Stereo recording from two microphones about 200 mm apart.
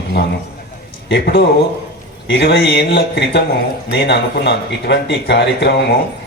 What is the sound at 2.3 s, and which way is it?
Speech, 65° left (ahead or behind).